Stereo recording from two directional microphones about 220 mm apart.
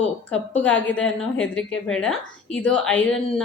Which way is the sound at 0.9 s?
5° left (ahead or behind).